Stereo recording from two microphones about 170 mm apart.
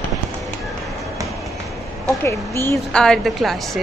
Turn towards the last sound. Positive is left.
turn(degrees=0)  # may be behind; listen again after turning